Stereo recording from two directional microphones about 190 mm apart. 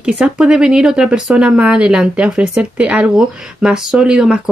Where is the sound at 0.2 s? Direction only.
5° right (ahead or behind).